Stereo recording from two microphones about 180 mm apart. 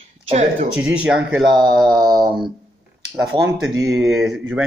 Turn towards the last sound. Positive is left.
turn(degrees=0)  # may be behind; listen again after turning